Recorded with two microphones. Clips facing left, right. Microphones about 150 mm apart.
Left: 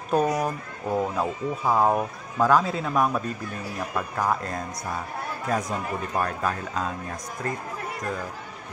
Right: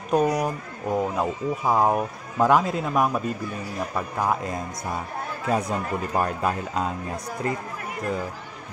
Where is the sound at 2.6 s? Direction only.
Centre (ahead or behind).